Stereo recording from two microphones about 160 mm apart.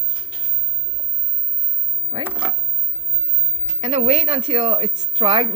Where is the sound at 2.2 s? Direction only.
10° right (ahead or behind).